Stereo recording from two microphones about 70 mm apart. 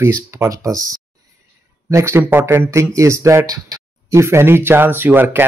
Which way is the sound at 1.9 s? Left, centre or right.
Right.